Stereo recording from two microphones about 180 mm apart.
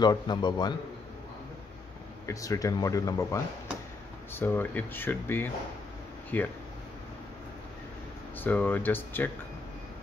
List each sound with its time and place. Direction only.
0.0 s speech: 25° left (ahead or behind)
2.2 s speech: 20° left (ahead or behind)
8.4 s speech: 10° left (ahead or behind)